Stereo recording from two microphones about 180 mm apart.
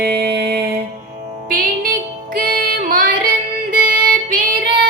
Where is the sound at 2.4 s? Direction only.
55° right (ahead or behind).